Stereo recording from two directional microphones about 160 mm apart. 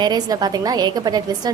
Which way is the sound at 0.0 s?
25° right (ahead or behind).